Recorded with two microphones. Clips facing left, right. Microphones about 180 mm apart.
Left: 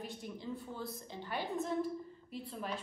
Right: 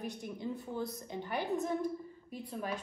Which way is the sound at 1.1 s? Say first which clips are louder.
Right 3 dB; 20° right (ahead or behind).